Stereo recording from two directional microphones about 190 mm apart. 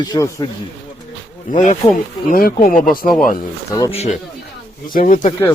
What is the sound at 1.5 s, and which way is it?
Speech, 40° left (ahead or behind).